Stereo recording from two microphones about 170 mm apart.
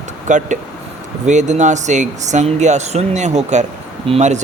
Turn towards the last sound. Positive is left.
turn(degrees=-40)  # may be behind; listen again after turning